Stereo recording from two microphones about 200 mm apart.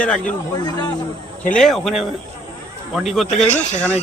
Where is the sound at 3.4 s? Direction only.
5° left (ahead or behind).